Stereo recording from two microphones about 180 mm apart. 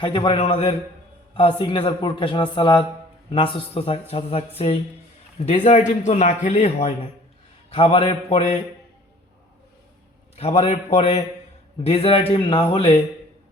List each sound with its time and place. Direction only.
0.0 s a man's voice: 25° left (ahead or behind)
10.3 s a man's voice: 35° left (ahead or behind)